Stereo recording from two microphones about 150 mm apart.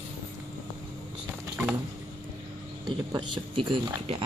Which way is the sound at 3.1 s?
30° right (ahead or behind).